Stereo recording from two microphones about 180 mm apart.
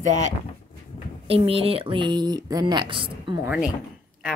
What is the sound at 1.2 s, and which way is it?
Speech, 30° right (ahead or behind).